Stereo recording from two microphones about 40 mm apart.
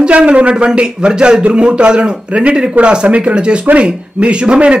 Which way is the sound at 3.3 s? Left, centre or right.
Right.